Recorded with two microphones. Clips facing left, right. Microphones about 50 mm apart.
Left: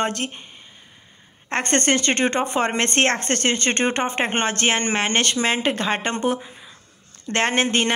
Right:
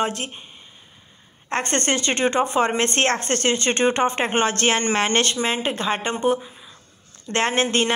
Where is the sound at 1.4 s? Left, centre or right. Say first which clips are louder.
Left 2 dB; left.